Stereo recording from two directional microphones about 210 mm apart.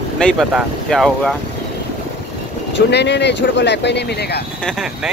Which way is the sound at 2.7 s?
55° left (ahead or behind).